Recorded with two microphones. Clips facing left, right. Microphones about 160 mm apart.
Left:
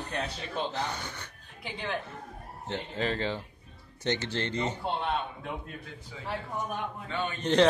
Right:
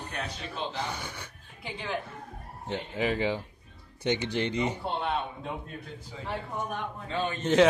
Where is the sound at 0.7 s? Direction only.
10° right (ahead or behind).